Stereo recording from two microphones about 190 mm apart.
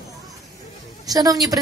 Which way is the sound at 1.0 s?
20° right (ahead or behind).